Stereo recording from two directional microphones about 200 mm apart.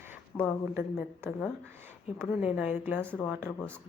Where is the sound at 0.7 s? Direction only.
10° right (ahead or behind).